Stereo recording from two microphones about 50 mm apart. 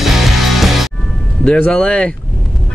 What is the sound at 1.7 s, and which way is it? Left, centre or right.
Speech, centre.